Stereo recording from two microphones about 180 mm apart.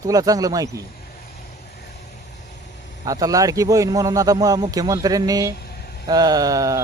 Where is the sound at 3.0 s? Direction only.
20° right (ahead or behind).